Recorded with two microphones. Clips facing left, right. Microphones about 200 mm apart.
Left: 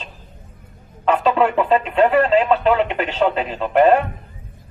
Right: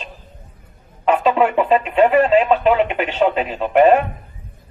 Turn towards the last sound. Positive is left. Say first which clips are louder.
# right 1 dB
turn(degrees=-10)  # may be behind; listen again after turning